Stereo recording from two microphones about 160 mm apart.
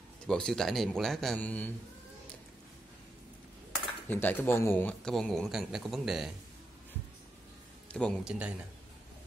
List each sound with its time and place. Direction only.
0.3 s speech: 5° left (ahead or behind)
4.1 s speech: 15° left (ahead or behind)
7.9 s speech: 5° left (ahead or behind)
8.2 s speech: 5° right (ahead or behind)